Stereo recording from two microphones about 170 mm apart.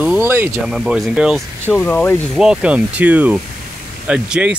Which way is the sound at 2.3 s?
5° right (ahead or behind).